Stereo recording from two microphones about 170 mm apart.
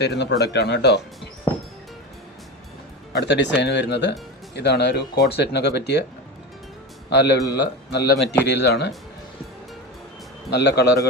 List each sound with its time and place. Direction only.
0.0 s speech: 85° left
3.1 s speech: 85° left
7.1 s speech: 80° left
10.5 s speech: 80° left